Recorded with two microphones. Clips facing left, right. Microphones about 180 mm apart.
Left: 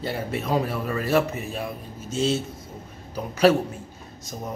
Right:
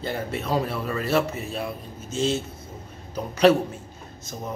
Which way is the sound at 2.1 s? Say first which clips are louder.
Left 1 dB; 35° left (ahead or behind).